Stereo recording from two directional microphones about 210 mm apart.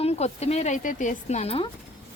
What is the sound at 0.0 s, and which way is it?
Speech, 30° left (ahead or behind).